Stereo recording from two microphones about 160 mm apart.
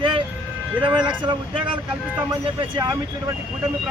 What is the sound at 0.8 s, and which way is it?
Speech, 5° right (ahead or behind).